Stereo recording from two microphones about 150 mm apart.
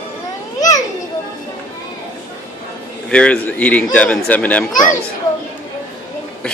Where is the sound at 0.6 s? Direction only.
25° left (ahead or behind).